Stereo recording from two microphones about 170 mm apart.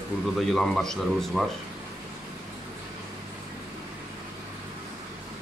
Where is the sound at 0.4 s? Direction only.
Centre (ahead or behind).